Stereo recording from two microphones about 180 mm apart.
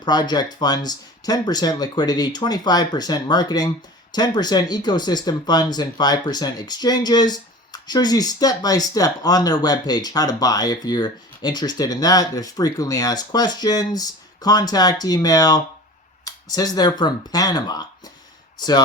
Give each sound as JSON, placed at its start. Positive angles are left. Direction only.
{"t": 0.0, "sound": "speech", "side_deg": 25}